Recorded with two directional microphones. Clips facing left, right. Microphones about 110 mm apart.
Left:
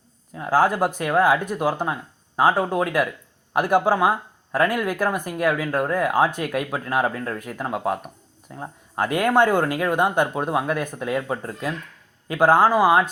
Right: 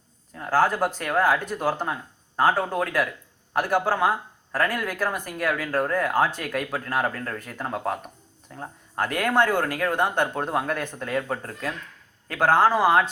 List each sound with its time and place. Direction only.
0.3 s speech: 15° left (ahead or behind)